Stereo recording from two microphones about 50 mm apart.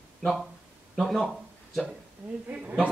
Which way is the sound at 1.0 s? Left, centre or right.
Centre.